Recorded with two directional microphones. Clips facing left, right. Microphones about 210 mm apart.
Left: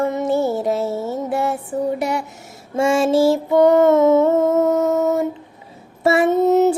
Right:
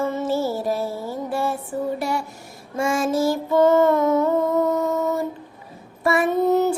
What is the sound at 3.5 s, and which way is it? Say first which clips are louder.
Music: left 2 dB; 15° left (ahead or behind).